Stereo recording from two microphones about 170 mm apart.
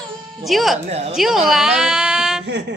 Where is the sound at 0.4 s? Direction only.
Centre (ahead or behind).